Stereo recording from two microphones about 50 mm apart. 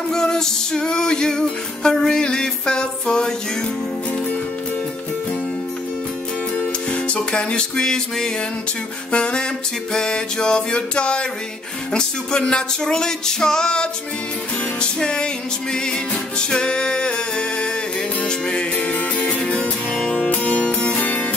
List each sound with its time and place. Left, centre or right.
0.1 s music: centre
6.5 s music: left